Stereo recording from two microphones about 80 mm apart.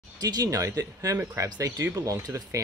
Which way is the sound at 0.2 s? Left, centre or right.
Right.